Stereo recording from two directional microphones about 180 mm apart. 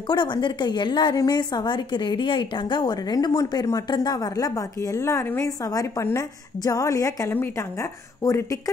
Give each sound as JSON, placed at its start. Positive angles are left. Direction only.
{"t": 0.1, "sound": "a woman's voice", "side_deg": 25}